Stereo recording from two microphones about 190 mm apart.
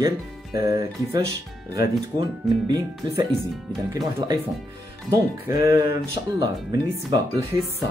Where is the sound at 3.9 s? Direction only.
20° right (ahead or behind).